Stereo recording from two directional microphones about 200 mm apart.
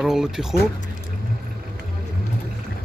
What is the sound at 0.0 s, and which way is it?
Speech, 5° right (ahead or behind).